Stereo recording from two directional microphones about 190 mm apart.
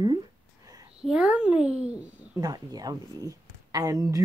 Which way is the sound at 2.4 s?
20° right (ahead or behind).